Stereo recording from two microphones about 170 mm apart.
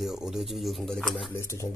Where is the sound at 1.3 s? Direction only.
15° left (ahead or behind).